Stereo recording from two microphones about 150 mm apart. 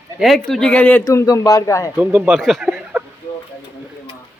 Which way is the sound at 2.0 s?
10° right (ahead or behind).